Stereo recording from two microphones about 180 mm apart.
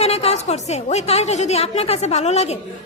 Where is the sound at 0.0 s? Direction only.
35° left (ahead or behind).